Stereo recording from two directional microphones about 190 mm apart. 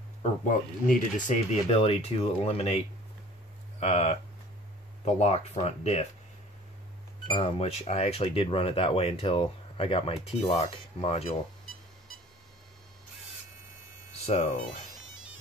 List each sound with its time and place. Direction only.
0.2 s speech: 40° left (ahead or behind)
3.8 s speech: 35° left (ahead or behind)
7.2 s speech: 30° left (ahead or behind)